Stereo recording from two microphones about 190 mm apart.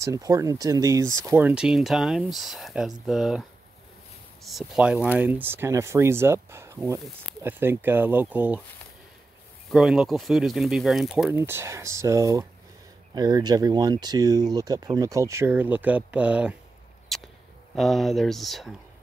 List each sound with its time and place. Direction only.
0.0 s speech: 15° right (ahead or behind)
9.7 s speech: centre (ahead or behind)
11.3 s speech: 15° right (ahead or behind)
17.1 s a sound: centre (ahead or behind)
17.7 s speech: centre (ahead or behind)